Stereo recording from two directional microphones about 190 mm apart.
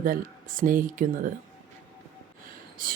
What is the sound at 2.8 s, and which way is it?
Speech, 45° right (ahead or behind).